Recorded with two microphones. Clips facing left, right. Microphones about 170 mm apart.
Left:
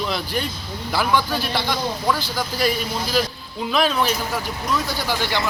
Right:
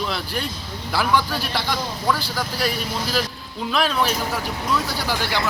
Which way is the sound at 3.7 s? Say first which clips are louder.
Left 1 dB; centre (ahead or behind).